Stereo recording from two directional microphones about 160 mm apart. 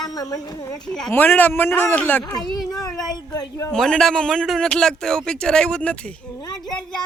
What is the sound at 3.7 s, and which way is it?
A man's voice, 5° left (ahead or behind).